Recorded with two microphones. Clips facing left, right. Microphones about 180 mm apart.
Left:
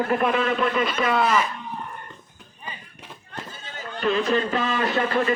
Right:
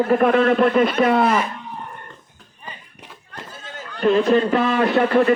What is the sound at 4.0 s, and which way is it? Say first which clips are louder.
A man's voice: right 6 dB; 55° right (ahead or behind).